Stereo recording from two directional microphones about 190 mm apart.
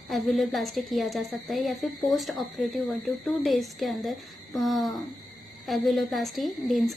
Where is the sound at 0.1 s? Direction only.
Centre (ahead or behind).